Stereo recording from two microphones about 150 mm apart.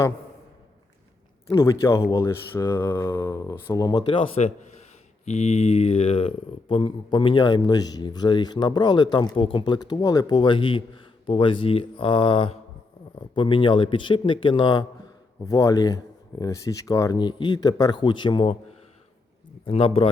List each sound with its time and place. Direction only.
1.5 s speech: 20° left (ahead or behind)
5.2 s speech: 50° left (ahead or behind); by 18.5 s 35° left (ahead or behind)
19.6 s speech: 40° left (ahead or behind)